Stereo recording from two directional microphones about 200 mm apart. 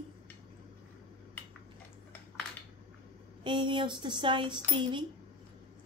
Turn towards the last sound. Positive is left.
turn(degrees=-25)  # may be behind; listen again after turning